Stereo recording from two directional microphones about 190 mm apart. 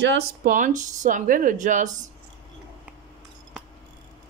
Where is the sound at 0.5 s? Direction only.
40° right (ahead or behind).